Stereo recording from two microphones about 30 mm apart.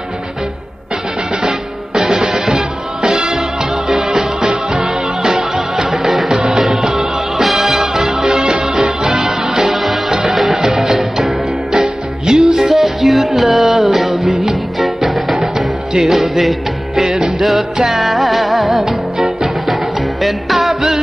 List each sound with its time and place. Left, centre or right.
2.0 s music: centre
3.3 s music: centre
8.3 s music: right
9.6 s music: centre
15.5 s music: centre